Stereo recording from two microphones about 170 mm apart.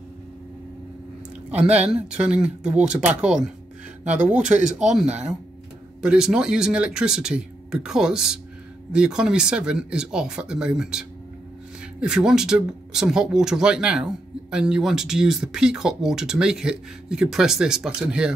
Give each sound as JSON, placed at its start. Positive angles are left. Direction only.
{"t": 1.9, "sound": "speech", "side_deg": -5}
{"t": 4.3, "sound": "speech", "side_deg": -5}
{"t": 5.0, "sound": "speech", "side_deg": -40}
{"t": 6.0, "sound": "speech", "side_deg": -5}